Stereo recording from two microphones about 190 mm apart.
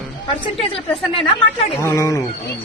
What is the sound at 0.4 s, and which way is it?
A woman's voice, 30° left (ahead or behind).